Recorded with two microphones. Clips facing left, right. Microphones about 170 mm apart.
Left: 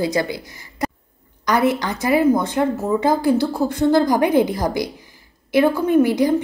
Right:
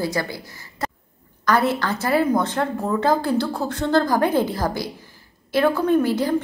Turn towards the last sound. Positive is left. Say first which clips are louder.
# left 3 dB
turn(degrees=15)  # may be behind; listen again after turning